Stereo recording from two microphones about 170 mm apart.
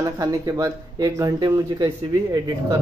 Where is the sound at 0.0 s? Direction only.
20° right (ahead or behind).